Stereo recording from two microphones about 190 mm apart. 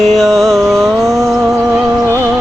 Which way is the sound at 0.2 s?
Centre (ahead or behind).